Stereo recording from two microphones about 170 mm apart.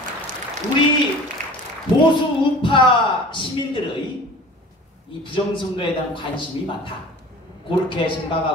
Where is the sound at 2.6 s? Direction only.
30° left (ahead or behind).